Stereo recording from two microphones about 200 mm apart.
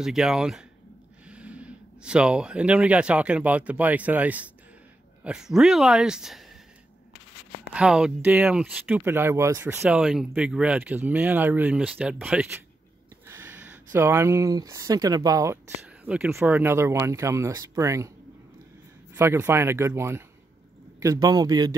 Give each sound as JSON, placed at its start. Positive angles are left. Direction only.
{"t": 0.0, "sound": "speech", "side_deg": -5}
{"t": 7.7, "sound": "speech", "side_deg": -5}
{"t": 19.1, "sound": "speech", "side_deg": -10}